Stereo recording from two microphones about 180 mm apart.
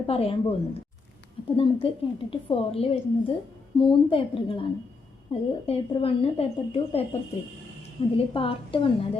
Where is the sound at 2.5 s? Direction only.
30° left (ahead or behind).